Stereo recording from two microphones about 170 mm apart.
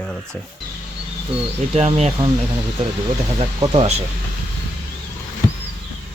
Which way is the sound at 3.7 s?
35° right (ahead or behind).